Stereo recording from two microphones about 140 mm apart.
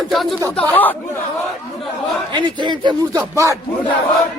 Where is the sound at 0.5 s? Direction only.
10° left (ahead or behind).